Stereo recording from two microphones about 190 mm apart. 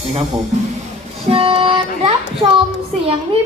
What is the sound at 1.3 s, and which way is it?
Speech, 30° right (ahead or behind).